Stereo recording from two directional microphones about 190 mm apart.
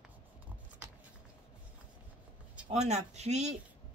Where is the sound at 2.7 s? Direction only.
35° right (ahead or behind).